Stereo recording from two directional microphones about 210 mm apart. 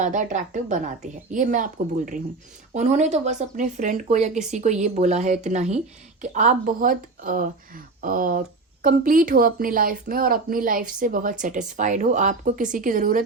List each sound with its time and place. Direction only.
0.0 s speech: 35° right (ahead or behind)